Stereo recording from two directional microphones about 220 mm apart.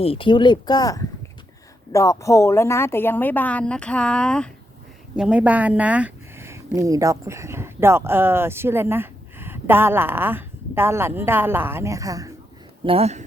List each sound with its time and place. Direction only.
0.0 s a woman's voice: 25° left (ahead or behind); by 12.3 s 15° right (ahead or behind)
12.8 s speech: 25° right (ahead or behind)